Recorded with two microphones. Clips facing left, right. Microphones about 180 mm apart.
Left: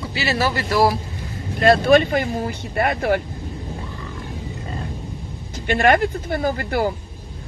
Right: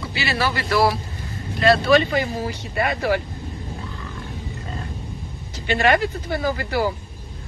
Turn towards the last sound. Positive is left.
turn(degrees=50)  # may be behind; listen again after turning